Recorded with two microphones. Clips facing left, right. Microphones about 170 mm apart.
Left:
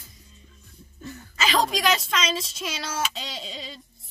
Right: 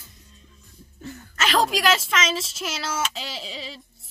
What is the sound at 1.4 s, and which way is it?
Speech, centre (ahead or behind).